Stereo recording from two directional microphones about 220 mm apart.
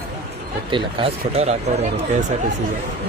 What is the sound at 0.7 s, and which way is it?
Speech, 25° right (ahead or behind).